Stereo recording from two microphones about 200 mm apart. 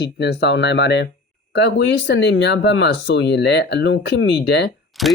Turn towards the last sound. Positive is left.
turn(degrees=0)  # may be behind; listen again after turning